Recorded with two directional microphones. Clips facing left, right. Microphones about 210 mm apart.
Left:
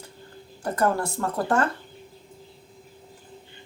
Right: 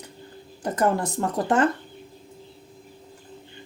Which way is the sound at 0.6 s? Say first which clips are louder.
Right 1 dB; 20° right (ahead or behind).